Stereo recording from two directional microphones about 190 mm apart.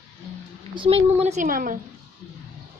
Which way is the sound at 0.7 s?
30° right (ahead or behind).